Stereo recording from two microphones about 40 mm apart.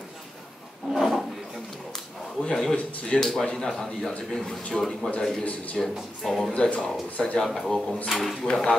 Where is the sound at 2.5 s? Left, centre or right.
Centre.